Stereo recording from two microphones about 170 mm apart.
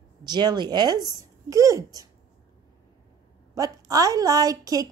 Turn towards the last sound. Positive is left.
turn(degrees=-20)  # may be behind; listen again after turning